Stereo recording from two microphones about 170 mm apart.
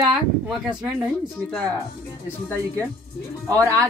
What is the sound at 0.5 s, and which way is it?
Speech, 5° right (ahead or behind).